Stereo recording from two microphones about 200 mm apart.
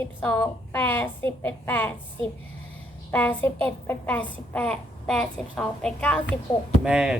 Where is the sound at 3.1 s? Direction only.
10° left (ahead or behind).